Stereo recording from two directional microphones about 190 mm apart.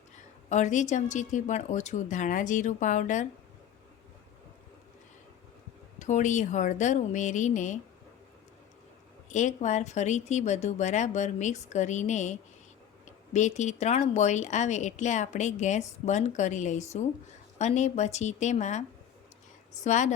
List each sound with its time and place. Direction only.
0.5 s speech: 40° left (ahead or behind)
6.0 s speech: 40° left (ahead or behind)
9.3 s speech: 40° left (ahead or behind)